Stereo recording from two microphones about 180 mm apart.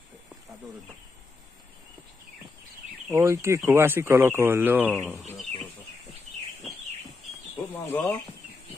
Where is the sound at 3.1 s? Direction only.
15° right (ahead or behind).